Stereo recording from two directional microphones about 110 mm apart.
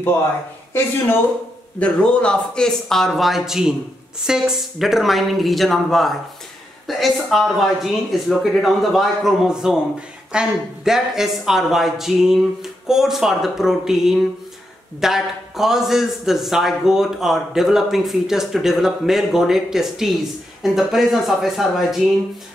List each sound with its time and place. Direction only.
1.8 s a man's voice: 10° left (ahead or behind)